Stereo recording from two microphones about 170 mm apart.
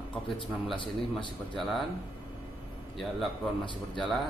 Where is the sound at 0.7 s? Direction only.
30° left (ahead or behind).